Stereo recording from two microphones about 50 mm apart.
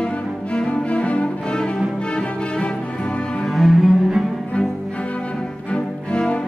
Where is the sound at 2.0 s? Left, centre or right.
Left.